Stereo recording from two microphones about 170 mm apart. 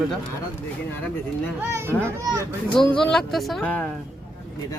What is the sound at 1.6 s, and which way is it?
Speech, 15° right (ahead or behind).